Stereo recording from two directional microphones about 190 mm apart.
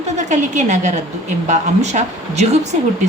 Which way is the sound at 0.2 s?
40° right (ahead or behind).